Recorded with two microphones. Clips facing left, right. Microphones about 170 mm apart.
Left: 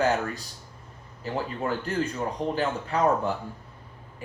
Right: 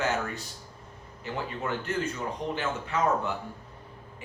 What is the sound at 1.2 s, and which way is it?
Speech, 35° left (ahead or behind).